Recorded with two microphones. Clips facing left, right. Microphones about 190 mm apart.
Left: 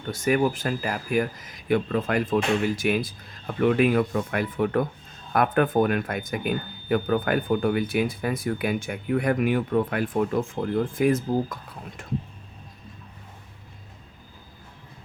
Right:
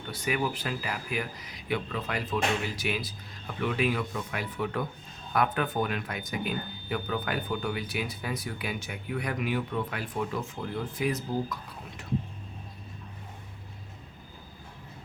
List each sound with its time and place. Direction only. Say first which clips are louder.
0.1 s speech: left 8 dB; 45° left (ahead or behind)